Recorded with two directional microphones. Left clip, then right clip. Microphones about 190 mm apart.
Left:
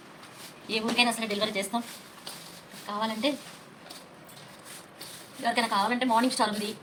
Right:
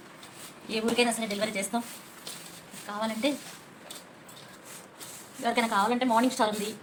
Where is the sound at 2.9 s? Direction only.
10° right (ahead or behind).